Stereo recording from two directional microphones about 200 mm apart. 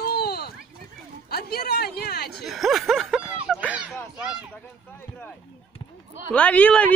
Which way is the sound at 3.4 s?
5° right (ahead or behind).